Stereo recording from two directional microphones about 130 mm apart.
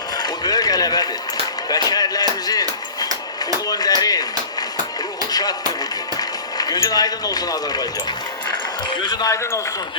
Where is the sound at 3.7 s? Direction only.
30° left (ahead or behind).